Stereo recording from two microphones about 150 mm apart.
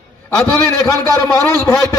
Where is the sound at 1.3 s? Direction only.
25° left (ahead or behind).